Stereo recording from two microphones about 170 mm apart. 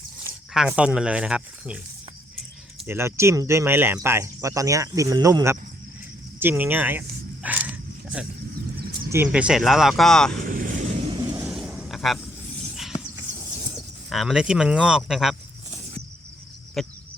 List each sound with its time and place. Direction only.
0.5 s speech: 5° right (ahead or behind)
2.8 s speech: 15° right (ahead or behind)
7.4 s a sound: 10° right (ahead or behind)
9.0 s speech: 10° right (ahead or behind); by 10.3 s 5° left (ahead or behind)
10.4 s vehicle: 55° right (ahead or behind)
11.4 s a sound: 5° right (ahead or behind)
14.1 s speech: centre (ahead or behind)
16.8 s chicken: centre (ahead or behind)